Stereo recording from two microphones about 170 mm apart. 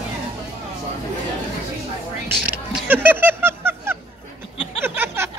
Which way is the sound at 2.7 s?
10° right (ahead or behind).